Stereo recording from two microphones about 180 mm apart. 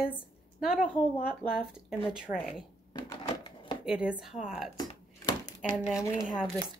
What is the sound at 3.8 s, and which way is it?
Speech, 5° right (ahead or behind).